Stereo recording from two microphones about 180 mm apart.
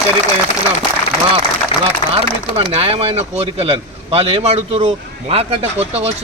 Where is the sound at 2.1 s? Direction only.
30° right (ahead or behind).